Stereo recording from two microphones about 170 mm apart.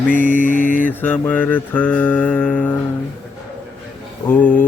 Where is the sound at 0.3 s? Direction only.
50° left (ahead or behind).